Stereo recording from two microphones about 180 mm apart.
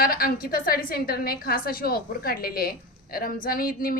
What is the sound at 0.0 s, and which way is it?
A woman's voice, 55° left (ahead or behind).